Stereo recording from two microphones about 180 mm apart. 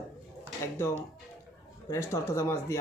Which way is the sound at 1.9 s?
15° left (ahead or behind).